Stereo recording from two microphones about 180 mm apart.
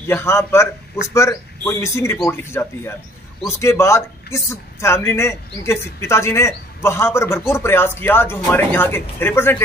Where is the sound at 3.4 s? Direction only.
15° left (ahead or behind).